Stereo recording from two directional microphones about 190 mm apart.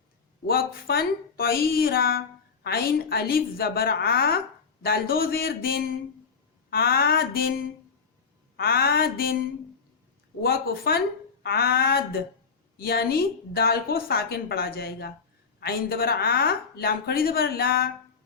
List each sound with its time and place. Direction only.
0.4 s a woman's voice: 55° left (ahead or behind)
10.4 s a woman's voice: 55° left (ahead or behind)